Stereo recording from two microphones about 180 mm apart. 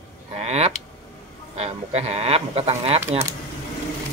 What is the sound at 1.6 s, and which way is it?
Speech, 35° right (ahead or behind).